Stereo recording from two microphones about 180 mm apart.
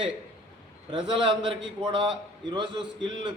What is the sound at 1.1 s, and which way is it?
A man's voice, 30° right (ahead or behind).